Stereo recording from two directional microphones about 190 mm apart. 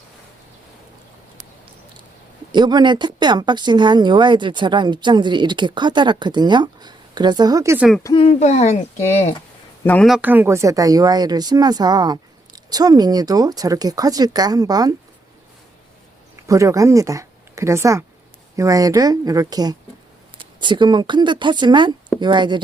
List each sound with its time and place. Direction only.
2.5 s a woman's voice: 20° right (ahead or behind)
8.0 s speech: 30° left (ahead or behind)
9.8 s speech: 5° left (ahead or behind)
10.2 s a woman's voice: 10° right (ahead or behind)
16.5 s a woman's voice: 15° right (ahead or behind)